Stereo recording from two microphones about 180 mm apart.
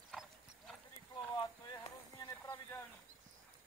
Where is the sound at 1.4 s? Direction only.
20° left (ahead or behind).